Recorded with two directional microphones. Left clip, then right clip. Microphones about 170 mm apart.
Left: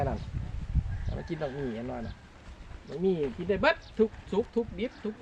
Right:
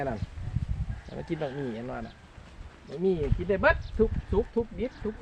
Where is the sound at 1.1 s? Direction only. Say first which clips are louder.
Right 2 dB; 35° right (ahead or behind).